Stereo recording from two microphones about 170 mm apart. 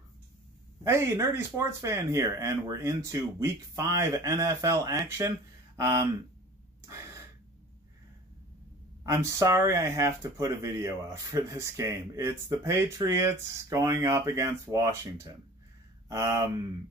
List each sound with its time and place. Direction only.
0.8 s speech: 15° right (ahead or behind)
6.9 s gasp: 15° right (ahead or behind)
9.0 s speech: 20° right (ahead or behind)